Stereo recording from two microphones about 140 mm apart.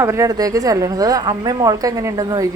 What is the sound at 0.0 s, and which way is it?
A woman's voice, 20° right (ahead or behind).